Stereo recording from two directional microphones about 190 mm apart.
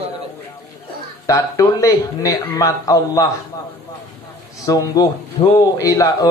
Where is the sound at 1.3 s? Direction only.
15° left (ahead or behind).